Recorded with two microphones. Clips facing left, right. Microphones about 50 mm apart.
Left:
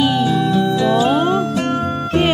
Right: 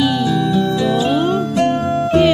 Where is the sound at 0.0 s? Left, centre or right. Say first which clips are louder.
Even; left.